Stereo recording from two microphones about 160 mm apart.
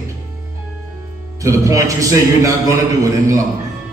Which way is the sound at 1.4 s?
20° right (ahead or behind).